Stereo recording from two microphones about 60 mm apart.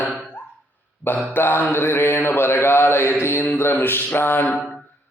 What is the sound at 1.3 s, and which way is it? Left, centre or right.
Mantra, left.